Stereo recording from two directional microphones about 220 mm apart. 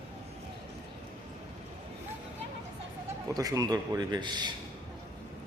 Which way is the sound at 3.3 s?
15° right (ahead or behind).